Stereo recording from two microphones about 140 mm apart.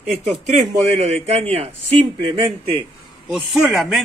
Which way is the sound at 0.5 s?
55° right (ahead or behind).